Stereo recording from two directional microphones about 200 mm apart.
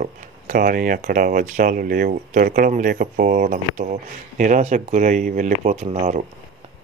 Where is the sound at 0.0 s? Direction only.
45° right (ahead or behind).